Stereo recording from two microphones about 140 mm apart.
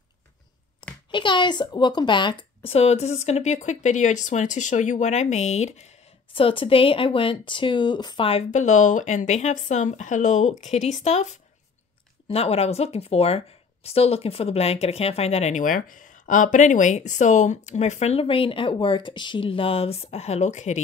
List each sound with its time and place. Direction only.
1.1 s speech: 35° left (ahead or behind); by 5.9 s 55° left (ahead or behind)
6.3 s speech: 40° left (ahead or behind)
8.5 s speech: 60° left (ahead or behind)
12.3 s speech: 45° left (ahead or behind)